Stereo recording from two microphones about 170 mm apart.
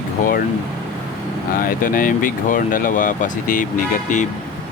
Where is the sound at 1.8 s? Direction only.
55° left (ahead or behind).